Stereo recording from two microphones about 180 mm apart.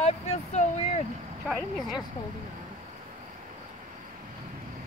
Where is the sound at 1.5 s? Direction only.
Centre (ahead or behind).